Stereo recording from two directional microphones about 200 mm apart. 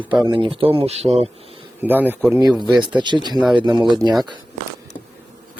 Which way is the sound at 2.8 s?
20° right (ahead or behind).